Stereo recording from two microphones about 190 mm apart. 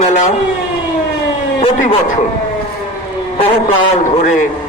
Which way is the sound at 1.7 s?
45° left (ahead or behind).